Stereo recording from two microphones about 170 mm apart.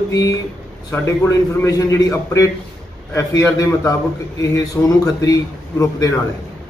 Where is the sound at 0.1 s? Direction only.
20° left (ahead or behind).